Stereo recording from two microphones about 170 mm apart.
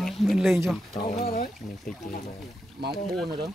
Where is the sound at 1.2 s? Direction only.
60° left (ahead or behind).